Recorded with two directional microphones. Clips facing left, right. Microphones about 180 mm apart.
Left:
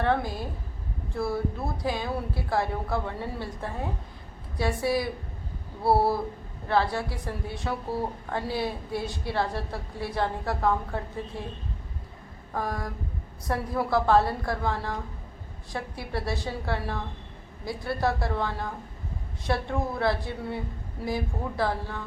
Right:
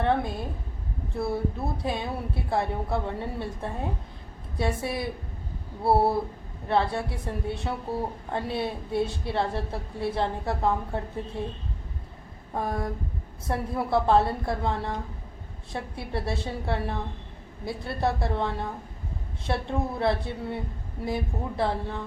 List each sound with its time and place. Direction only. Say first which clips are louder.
0.0 s a sound: right 1 dB; 25° right (ahead or behind)
1.1 s a woman's voice: even; 25° right (ahead or behind)
4.8 s a woman's voice: left 4 dB; 25° right (ahead or behind)
12.5 s a woman's voice: right 2 dB; 25° right (ahead or behind)